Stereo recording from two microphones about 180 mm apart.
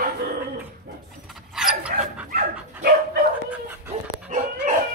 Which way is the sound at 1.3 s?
Centre (ahead or behind).